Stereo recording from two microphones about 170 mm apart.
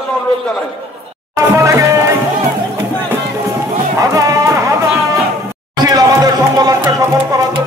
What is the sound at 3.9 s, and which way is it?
Music, 20° right (ahead or behind).